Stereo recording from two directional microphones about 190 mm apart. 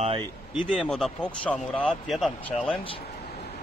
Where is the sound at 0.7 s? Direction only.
Centre (ahead or behind).